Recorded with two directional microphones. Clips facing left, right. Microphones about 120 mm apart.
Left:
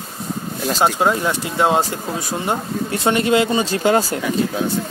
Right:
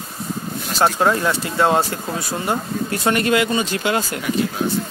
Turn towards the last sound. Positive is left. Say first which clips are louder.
# left 5 dB
turn(degrees=35)  # may be behind; listen again after turning